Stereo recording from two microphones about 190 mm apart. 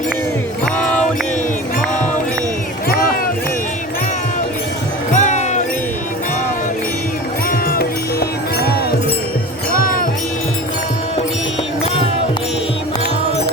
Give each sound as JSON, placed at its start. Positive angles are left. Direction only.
{"t": 5.1, "sound": "music", "side_deg": 40}
{"t": 7.7, "sound": "music", "side_deg": 55}